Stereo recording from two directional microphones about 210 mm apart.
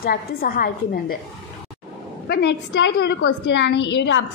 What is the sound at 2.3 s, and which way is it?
A woman's voice, 55° left (ahead or behind).